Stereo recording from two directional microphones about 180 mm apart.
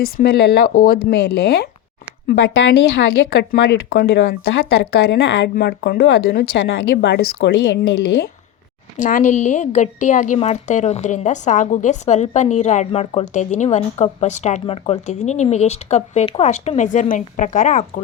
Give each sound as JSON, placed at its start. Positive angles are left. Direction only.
{"t": 0.0, "sound": "a woman's voice", "side_deg": 60}
{"t": 2.2, "sound": "a woman's voice", "side_deg": 80}
{"t": 9.0, "sound": "a woman's voice", "side_deg": 45}